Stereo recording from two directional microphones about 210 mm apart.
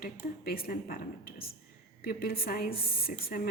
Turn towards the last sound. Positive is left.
turn(degrees=45)  # may be behind; listen again after turning